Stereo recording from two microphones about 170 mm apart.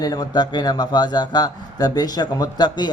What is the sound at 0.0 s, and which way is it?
A man's voice, 25° left (ahead or behind).